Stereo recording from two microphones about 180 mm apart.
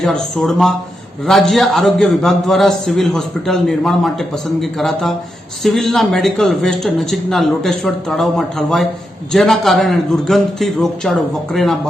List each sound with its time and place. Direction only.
0.0 s a man's voice: centre (ahead or behind)